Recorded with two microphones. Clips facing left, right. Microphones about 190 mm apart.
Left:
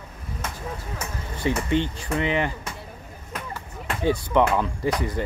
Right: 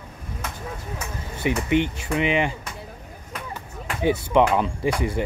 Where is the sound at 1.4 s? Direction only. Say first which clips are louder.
Right 2 dB; 15° right (ahead or behind).